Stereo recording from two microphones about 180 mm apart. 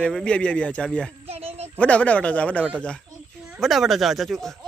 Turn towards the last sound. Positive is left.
turn(degrees=0)  # may be behind; listen again after turning